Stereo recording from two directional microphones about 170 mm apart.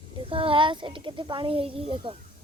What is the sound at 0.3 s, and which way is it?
Speech, 30° right (ahead or behind).